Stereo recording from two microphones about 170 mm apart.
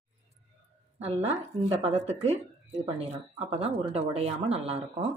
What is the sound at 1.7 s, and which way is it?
Speech, 40° right (ahead or behind).